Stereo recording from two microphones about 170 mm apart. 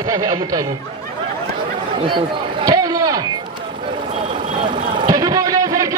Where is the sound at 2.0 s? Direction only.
25° right (ahead or behind).